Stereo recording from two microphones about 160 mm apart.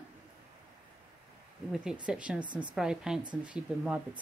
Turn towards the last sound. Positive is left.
turn(degrees=-5)  # may be behind; listen again after turning